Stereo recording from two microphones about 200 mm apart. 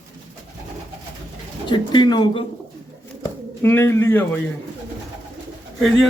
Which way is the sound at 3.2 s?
10° left (ahead or behind).